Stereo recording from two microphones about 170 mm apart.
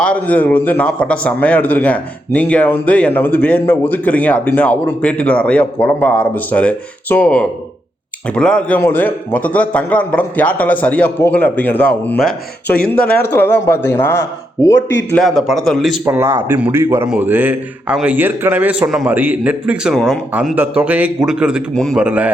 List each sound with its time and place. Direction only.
0.0 s a man's voice: 10° left (ahead or behind)
12.2 s speech: 60° left (ahead or behind)
13.0 s a man's voice: 10° left (ahead or behind)
14.8 s a man's voice: 90° left
15.1 s a man's voice: centre (ahead or behind)
16.0 s a man's voice: 15° right (ahead or behind)